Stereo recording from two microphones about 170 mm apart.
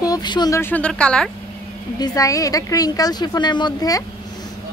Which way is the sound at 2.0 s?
20° left (ahead or behind).